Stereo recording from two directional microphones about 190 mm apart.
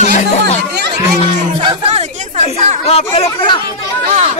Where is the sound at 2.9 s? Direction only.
30° left (ahead or behind).